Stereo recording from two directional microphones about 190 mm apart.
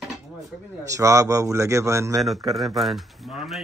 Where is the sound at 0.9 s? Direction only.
15° right (ahead or behind).